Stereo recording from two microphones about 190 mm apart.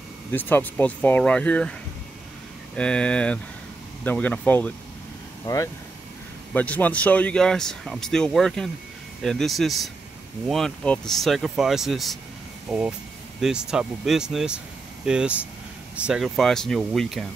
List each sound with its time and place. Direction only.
0.3 s speech: 10° left (ahead or behind)
2.7 s speech: 5° left (ahead or behind)